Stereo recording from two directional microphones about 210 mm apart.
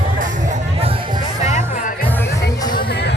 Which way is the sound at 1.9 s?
10° left (ahead or behind).